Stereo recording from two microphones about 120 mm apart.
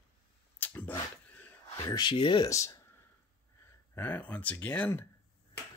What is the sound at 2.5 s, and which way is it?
Speech, 25° left (ahead or behind).